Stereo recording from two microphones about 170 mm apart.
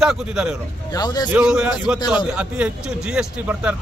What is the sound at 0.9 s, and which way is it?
Speech, 25° left (ahead or behind).